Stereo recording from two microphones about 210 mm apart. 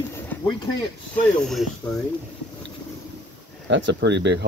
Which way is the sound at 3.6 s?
60° right (ahead or behind).